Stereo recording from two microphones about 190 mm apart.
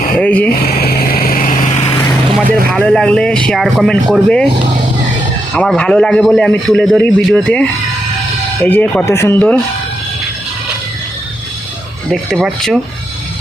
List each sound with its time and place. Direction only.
0.2 s speech: 10° left (ahead or behind)
0.5 s vehicle: 50° left (ahead or behind); by 2.0 s 35° left (ahead or behind)
2.7 s a man's voice: 5° left (ahead or behind)
5.5 s a man's voice: 5° left (ahead or behind)
12.1 s a man's voice: centre (ahead or behind)